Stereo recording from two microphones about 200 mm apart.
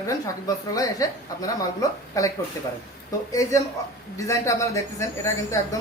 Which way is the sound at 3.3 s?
15° left (ahead or behind).